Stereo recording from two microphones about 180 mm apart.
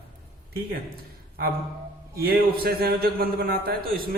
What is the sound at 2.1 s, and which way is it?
A man's voice, 55° right (ahead or behind).